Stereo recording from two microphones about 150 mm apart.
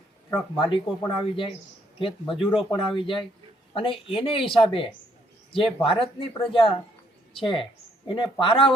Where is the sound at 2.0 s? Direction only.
35° left (ahead or behind).